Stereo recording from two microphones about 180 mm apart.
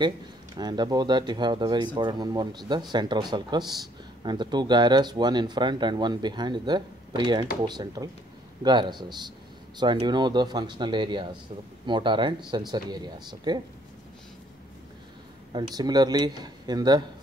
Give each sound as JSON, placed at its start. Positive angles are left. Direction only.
{"t": 0.6, "sound": "speech", "side_deg": -25}
{"t": 15.5, "sound": "speech", "side_deg": -20}